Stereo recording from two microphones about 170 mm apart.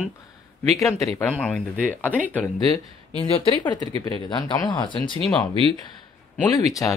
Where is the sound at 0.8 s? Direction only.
20° left (ahead or behind).